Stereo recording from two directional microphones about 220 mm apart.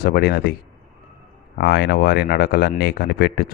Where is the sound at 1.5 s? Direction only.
45° left (ahead or behind).